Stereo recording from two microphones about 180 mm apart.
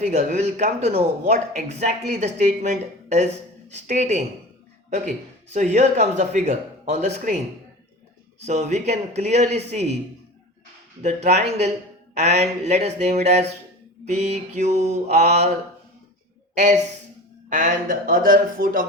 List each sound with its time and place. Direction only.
0.0 s a man's voice: 40° right (ahead or behind)
5.5 s a man's voice: 40° right (ahead or behind)
8.4 s a man's voice: 40° right (ahead or behind)
11.0 s a man's voice: 40° right (ahead or behind)
16.6 s a man's voice: 40° right (ahead or behind)